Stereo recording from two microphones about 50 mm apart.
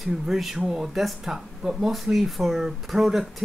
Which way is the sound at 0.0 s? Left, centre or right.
Centre.